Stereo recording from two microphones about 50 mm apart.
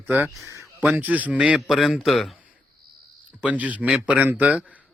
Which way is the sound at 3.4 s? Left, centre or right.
Right.